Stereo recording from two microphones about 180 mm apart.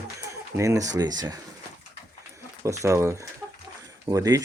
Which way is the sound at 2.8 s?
15° right (ahead or behind).